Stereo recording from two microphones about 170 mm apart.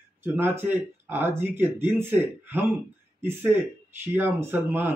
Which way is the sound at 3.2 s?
15° right (ahead or behind).